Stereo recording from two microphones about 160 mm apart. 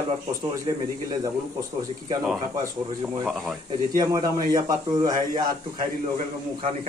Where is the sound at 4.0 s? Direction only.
25° right (ahead or behind).